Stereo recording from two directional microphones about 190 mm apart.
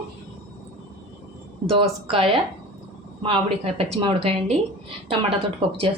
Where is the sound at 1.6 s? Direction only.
30° right (ahead or behind).